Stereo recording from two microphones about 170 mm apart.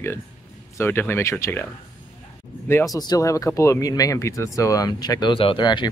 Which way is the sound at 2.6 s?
15° left (ahead or behind).